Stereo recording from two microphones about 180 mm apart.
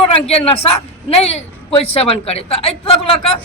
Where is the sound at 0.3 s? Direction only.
35° left (ahead or behind).